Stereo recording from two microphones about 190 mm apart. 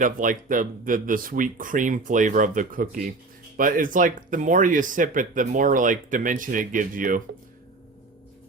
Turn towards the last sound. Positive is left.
turn(degrees=-45)  # may be behind; listen again after turning